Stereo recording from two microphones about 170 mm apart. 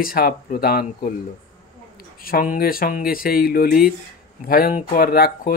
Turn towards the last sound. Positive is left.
turn(degrees=60)  # may be behind; listen again after turning